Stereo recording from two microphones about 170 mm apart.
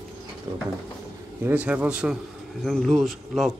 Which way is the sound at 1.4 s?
10° right (ahead or behind).